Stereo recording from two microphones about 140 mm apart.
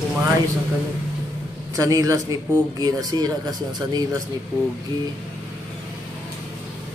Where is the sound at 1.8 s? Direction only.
25° right (ahead or behind).